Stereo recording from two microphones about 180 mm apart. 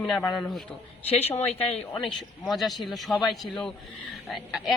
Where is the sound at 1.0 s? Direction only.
35° left (ahead or behind).